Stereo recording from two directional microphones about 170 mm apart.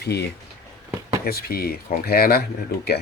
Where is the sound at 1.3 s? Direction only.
65° left (ahead or behind).